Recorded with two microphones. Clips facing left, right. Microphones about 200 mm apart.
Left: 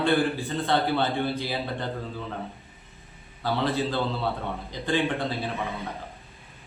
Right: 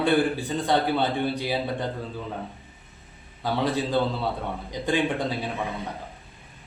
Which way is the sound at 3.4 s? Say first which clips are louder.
Right 1 dB; 15° right (ahead or behind).